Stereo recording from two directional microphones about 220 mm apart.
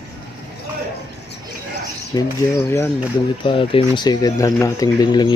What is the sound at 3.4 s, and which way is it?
Speech, 25° left (ahead or behind).